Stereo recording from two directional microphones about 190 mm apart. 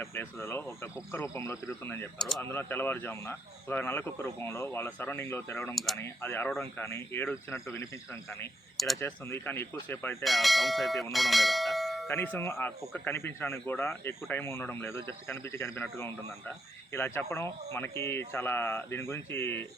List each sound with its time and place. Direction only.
0.0 s speech: 15° left (ahead or behind)
2.4 s speech: 10° left (ahead or behind)
5.7 s speech: centre (ahead or behind)
6.0 s speech: 10° left (ahead or behind)
10.2 s speech: centre (ahead or behind)